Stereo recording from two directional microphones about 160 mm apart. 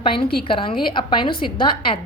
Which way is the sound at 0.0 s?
35° left (ahead or behind).